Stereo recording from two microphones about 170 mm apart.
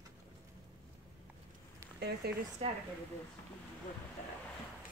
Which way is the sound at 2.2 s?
70° right (ahead or behind).